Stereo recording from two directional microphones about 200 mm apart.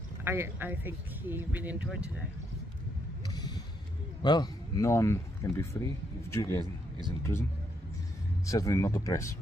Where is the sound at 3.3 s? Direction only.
20° left (ahead or behind).